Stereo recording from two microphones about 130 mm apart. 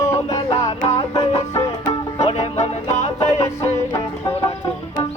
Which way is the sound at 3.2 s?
25° left (ahead or behind).